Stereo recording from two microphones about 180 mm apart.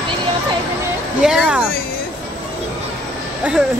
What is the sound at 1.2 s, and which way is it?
Speech, 5° right (ahead or behind).